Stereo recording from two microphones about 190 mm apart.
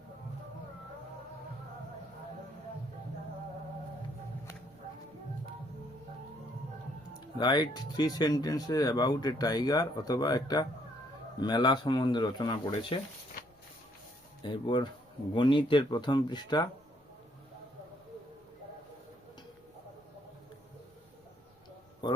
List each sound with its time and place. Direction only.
7.3 s speech: 20° left (ahead or behind)
14.4 s speech: 25° left (ahead or behind)